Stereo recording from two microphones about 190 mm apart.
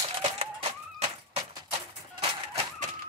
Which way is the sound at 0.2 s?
30° right (ahead or behind).